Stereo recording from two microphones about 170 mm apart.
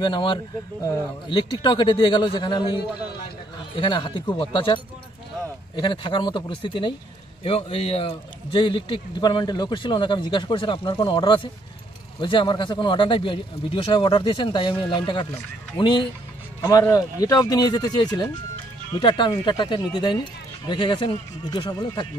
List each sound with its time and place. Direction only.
0.0 s a man's voice: 30° left (ahead or behind)